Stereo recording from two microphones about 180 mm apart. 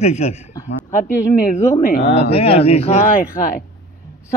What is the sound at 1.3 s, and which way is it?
Speech, 55° left (ahead or behind).